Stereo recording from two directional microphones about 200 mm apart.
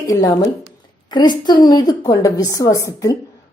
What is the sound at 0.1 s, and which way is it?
A woman's voice, 20° left (ahead or behind).